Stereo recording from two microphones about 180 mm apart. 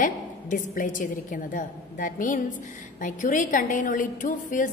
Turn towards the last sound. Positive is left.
turn(degrees=45)  # may be behind; listen again after turning